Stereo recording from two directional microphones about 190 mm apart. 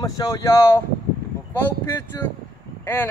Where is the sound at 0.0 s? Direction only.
20° left (ahead or behind).